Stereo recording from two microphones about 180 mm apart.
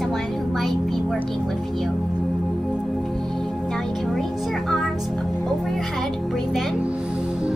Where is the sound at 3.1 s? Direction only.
Centre (ahead or behind).